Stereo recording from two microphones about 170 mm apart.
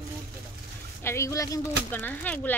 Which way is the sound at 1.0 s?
15° left (ahead or behind).